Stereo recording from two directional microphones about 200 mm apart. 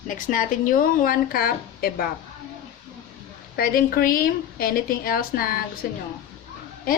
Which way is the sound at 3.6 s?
45° left (ahead or behind).